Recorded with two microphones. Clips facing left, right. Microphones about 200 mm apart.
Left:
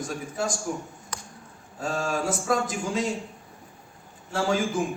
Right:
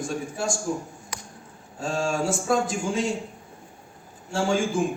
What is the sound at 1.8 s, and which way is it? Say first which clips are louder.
A man's voice: right 2 dB; 30° right (ahead or behind).